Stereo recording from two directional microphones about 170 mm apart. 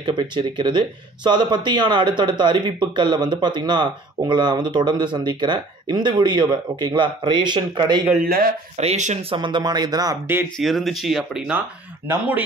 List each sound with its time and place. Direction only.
0.0 s speech: 25° right (ahead or behind)
8.7 s speech: 40° right (ahead or behind)
9.3 s speech: 25° right (ahead or behind)
10.6 s speech: centre (ahead or behind)